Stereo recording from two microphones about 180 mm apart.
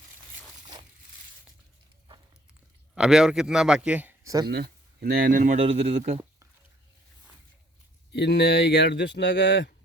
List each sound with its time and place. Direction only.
2.9 s a man's voice: 5° right (ahead or behind)
4.4 s a man's voice: 60° right (ahead or behind); by 6.2 s 35° right (ahead or behind)
8.1 s speech: 70° left (ahead or behind)